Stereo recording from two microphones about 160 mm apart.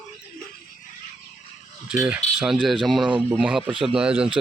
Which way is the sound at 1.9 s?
5° right (ahead or behind).